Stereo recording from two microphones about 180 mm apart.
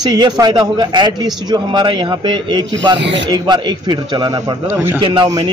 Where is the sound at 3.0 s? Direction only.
80° right.